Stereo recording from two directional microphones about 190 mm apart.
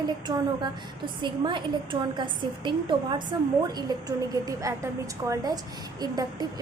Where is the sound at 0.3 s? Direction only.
20° right (ahead or behind).